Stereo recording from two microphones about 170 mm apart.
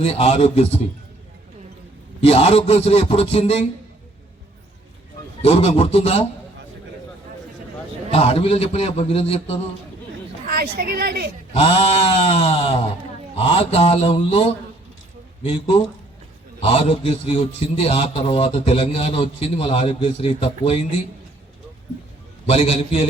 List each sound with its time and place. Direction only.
0.0 s a man's voice: 35° left (ahead or behind)
2.2 s a man's voice: 35° left (ahead or behind)
5.4 s a man's voice: 35° left (ahead or behind)
8.1 s a man's voice: 35° left (ahead or behind)
10.4 s a woman's voice: 60° right (ahead or behind)
11.5 s a man's voice: 35° left (ahead or behind)
16.6 s a man's voice: 40° left (ahead or behind)
22.4 s a man's voice: 35° left (ahead or behind)